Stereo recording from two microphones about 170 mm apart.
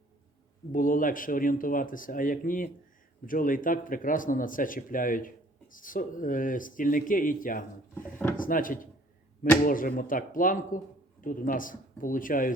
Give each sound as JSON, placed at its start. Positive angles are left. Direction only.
{"t": 0.7, "sound": "speech", "side_deg": 50}
{"t": 7.9, "sound": "speech", "side_deg": 15}
{"t": 8.4, "sound": "speech", "side_deg": 55}